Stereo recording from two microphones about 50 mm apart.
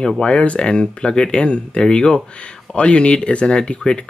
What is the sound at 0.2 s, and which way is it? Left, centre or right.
Speech, left.